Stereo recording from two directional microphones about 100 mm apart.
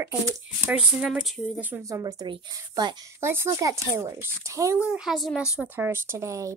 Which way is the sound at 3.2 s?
25° right (ahead or behind).